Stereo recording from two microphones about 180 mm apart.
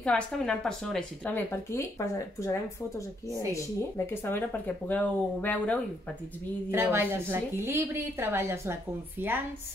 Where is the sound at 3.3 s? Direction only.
15° right (ahead or behind).